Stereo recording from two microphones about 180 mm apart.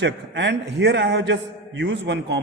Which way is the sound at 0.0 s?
75° right (ahead or behind).